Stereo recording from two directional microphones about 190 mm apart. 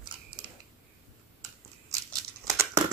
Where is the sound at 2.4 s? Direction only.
15° right (ahead or behind).